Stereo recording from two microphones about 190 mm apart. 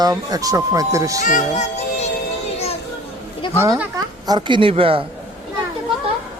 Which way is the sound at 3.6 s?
15° right (ahead or behind).